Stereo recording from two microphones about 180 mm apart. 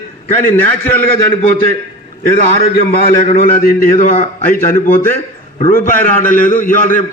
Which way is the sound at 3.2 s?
50° left (ahead or behind).